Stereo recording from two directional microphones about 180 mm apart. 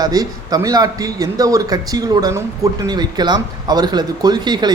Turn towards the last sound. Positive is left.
turn(degrees=-25)  # may be behind; listen again after turning